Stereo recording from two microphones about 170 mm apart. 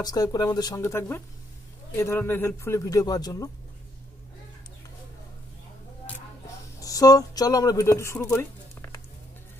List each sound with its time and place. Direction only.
0.0 s a man's voice: 25° left (ahead or behind)
6.8 s speech: 20° left (ahead or behind)